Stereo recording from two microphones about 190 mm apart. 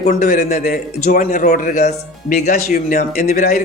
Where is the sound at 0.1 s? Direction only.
45° left (ahead or behind).